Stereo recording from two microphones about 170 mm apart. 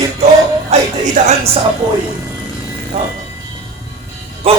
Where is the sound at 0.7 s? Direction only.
40° right (ahead or behind).